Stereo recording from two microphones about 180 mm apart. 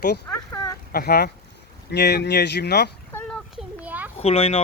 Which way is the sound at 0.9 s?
60° left (ahead or behind).